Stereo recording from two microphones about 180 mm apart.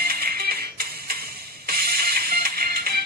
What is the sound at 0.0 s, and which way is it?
Music, 60° right (ahead or behind).